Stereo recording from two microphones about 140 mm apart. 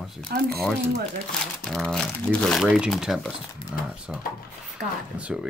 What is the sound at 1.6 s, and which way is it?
Speech, 5° left (ahead or behind).